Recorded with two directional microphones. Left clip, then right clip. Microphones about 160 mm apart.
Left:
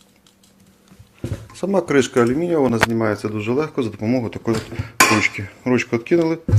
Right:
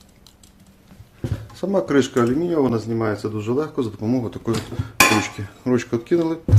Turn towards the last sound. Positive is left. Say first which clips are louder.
# left 3 dB
turn(degrees=15)  # may be behind; listen again after turning